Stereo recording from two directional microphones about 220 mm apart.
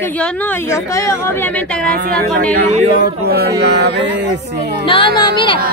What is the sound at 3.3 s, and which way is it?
Speech, 45° right (ahead or behind).